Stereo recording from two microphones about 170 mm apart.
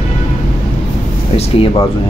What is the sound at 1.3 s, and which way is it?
Speech, 30° left (ahead or behind).